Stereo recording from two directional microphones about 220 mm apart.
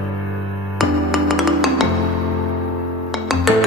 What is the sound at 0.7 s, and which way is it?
Music, centre (ahead or behind).